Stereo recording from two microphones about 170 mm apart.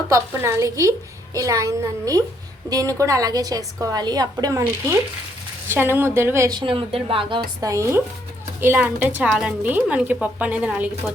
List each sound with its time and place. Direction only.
0.1 s a woman's voice: 15° right (ahead or behind)
6.6 s a woman's voice: 30° right (ahead or behind); by 11.1 s 5° right (ahead or behind)